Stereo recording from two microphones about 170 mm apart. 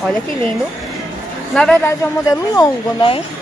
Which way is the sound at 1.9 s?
20° left (ahead or behind).